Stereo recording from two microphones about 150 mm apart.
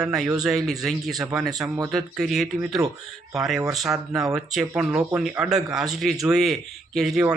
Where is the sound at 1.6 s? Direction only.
20° right (ahead or behind).